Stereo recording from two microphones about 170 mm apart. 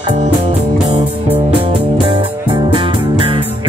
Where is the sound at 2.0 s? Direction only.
30° right (ahead or behind).